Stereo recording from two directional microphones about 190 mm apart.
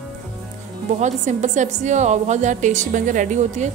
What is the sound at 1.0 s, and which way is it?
A woman's voice, 40° right (ahead or behind).